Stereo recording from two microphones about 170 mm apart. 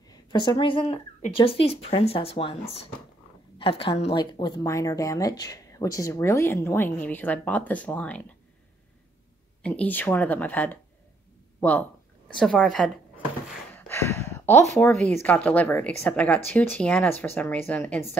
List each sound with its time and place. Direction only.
0.3 s speech: 25° left (ahead or behind)
3.5 s speech: 30° left (ahead or behind); by 8.2 s 10° left (ahead or behind)
9.6 s speech: 5° left (ahead or behind)
12.4 s speech: 5° left (ahead or behind)
13.7 s a sound: 15° left (ahead or behind)
15.2 s speech: 10° left (ahead or behind)